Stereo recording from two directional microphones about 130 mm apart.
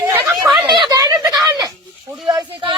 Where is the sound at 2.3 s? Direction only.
35° right (ahead or behind).